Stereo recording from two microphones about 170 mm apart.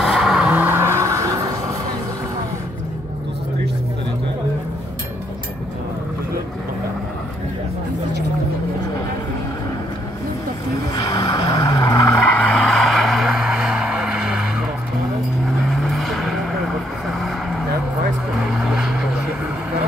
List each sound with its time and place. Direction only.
0.0 s vehicle: 5° right (ahead or behind); by 1.8 s 20° right (ahead or behind)
10.8 s vehicle: 20° left (ahead or behind)
12.3 s vehicle: 10° left (ahead or behind)
15.7 s vehicle: centre (ahead or behind)